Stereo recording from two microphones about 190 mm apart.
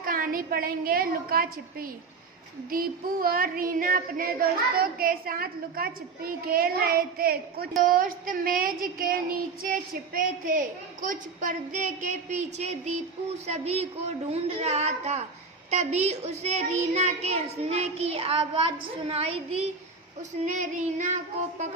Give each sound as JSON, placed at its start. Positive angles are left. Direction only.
{"t": 0.0, "sound": "a sound", "side_deg": -50}
{"t": 13.5, "sound": "a woman's voice", "side_deg": -35}
{"t": 20.4, "sound": "a woman's voice", "side_deg": -40}